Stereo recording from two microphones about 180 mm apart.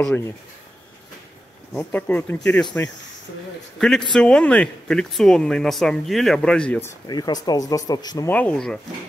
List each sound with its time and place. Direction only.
0.0 s speech: 10° left (ahead or behind)
1.7 s speech: 10° left (ahead or behind)
7.1 s speech: 20° left (ahead or behind)
8.3 s speech: 10° left (ahead or behind)